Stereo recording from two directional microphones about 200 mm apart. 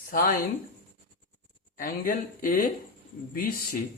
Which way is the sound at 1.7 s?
45° left (ahead or behind).